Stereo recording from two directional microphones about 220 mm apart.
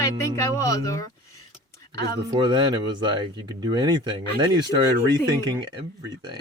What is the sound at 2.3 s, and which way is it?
Speech, 20° right (ahead or behind).